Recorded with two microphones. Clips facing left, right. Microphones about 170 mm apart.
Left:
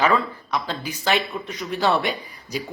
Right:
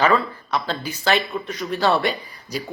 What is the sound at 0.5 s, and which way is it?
Speech, 15° left (ahead or behind).